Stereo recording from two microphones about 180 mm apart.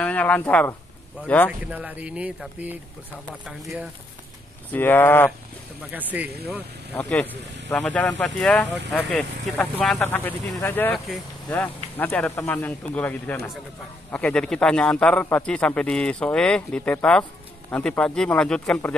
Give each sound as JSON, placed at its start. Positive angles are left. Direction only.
{"t": 0.0, "sound": "speech", "side_deg": 10}
{"t": 1.6, "sound": "speech", "side_deg": -10}
{"t": 4.7, "sound": "speech", "side_deg": 10}
{"t": 5.9, "sound": "speech", "side_deg": -10}
{"t": 6.2, "sound": "speech", "side_deg": -60}
{"t": 7.0, "sound": "a man's voice", "side_deg": 5}